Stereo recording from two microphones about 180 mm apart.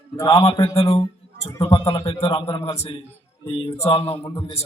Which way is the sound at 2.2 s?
35° left (ahead or behind).